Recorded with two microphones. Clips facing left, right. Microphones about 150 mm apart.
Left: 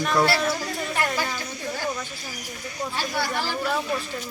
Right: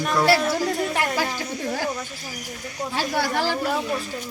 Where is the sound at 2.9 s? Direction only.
90° right.